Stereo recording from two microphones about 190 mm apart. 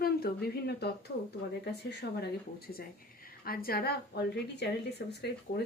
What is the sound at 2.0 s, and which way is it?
Speech, 60° left (ahead or behind).